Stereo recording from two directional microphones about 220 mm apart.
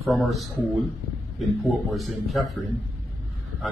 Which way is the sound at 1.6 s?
Centre (ahead or behind).